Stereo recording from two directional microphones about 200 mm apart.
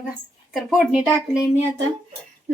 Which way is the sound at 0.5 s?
5° right (ahead or behind).